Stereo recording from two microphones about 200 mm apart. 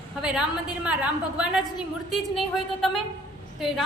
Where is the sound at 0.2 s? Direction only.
5° right (ahead or behind).